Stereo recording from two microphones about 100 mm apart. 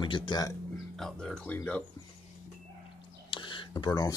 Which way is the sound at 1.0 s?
5° left (ahead or behind).